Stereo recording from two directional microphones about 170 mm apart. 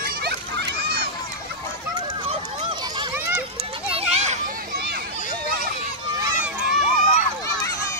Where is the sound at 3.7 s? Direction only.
35° right (ahead or behind); by 5.0 s 65° right (ahead or behind).